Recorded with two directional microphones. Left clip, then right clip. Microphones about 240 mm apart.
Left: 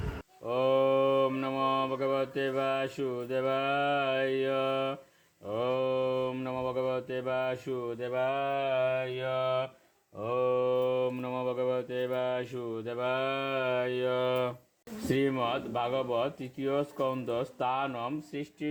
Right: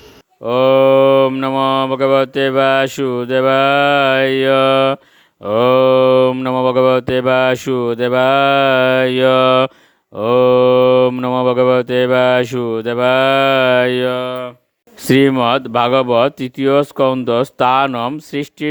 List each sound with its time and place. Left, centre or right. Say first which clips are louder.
0.4 s cattle: right 16 dB; right
15.0 s cattle: right 17 dB; right